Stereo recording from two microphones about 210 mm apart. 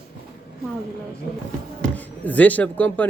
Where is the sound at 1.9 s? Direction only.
5° left (ahead or behind).